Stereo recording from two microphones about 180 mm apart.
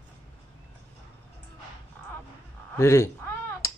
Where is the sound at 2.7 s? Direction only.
15° left (ahead or behind).